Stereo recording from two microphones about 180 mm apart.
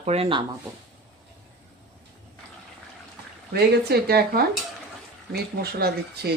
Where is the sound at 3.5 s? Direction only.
60° right (ahead or behind).